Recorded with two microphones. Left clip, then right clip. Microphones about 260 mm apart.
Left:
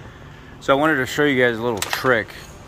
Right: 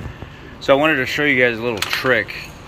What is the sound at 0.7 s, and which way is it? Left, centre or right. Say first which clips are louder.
A man's voice: right 3 dB; centre.